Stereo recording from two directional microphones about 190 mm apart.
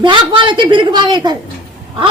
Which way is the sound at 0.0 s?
25° right (ahead or behind).